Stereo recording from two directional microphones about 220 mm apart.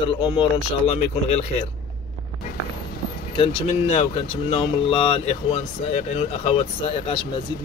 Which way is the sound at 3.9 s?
25° left (ahead or behind).